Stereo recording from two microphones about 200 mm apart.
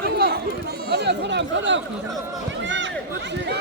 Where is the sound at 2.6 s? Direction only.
65° right (ahead or behind).